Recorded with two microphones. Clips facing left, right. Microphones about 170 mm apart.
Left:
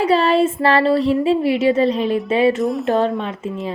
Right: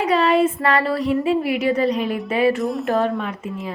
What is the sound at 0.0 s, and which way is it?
Speech, 30° left (ahead or behind).